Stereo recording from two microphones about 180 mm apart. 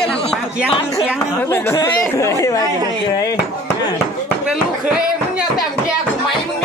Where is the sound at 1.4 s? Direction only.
10° left (ahead or behind).